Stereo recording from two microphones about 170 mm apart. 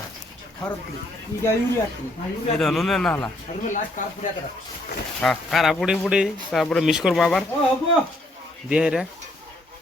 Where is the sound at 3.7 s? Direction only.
45° left (ahead or behind).